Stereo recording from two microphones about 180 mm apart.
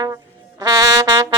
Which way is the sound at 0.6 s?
20° right (ahead or behind).